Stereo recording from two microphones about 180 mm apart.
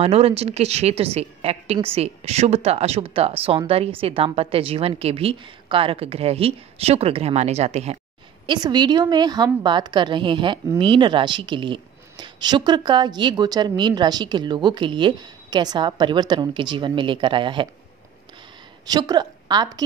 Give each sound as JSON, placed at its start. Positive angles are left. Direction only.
{"t": 0.0, "sound": "a woman's voice", "side_deg": -35}
{"t": 8.5, "sound": "speech", "side_deg": -25}
{"t": 18.9, "sound": "a woman's voice", "side_deg": -20}